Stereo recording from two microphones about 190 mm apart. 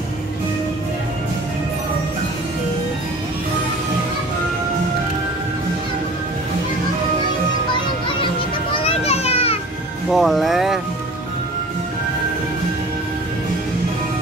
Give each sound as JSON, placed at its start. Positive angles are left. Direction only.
{"t": 8.8, "sound": "children playing", "side_deg": 35}
{"t": 10.1, "sound": "music", "side_deg": 0}